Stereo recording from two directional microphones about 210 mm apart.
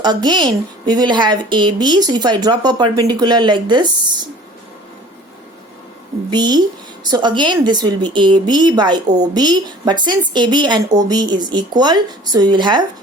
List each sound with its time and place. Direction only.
0.0 s a woman's voice: 20° right (ahead or behind)
6.3 s a woman's voice: 20° right (ahead or behind)